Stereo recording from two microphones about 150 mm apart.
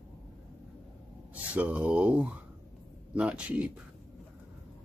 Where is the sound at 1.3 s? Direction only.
10° right (ahead or behind).